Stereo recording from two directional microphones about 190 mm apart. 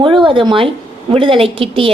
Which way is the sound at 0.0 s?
25° right (ahead or behind).